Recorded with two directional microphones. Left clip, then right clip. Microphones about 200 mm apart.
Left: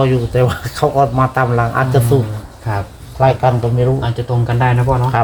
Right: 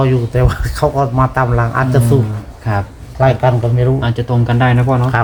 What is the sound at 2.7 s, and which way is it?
Speech, 50° right (ahead or behind).